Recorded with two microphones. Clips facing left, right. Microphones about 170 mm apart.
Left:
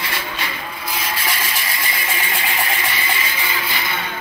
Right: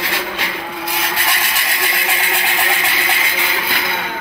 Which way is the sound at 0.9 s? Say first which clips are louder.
Right 2 dB; 70° right (ahead or behind).